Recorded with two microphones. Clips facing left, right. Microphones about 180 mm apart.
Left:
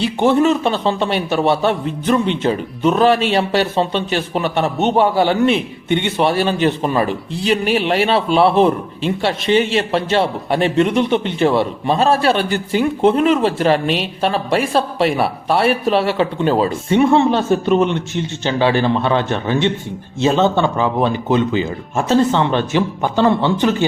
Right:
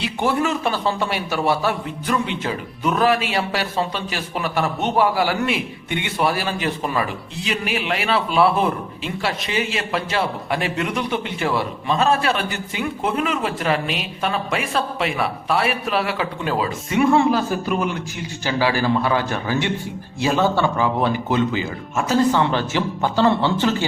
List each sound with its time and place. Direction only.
0.0 s a man's voice: 25° left (ahead or behind)